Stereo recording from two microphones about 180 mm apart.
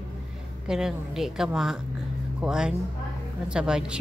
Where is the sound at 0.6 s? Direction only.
5° right (ahead or behind).